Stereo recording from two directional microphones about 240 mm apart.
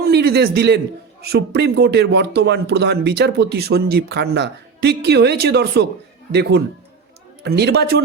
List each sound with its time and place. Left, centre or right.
0.0 s a man's voice: right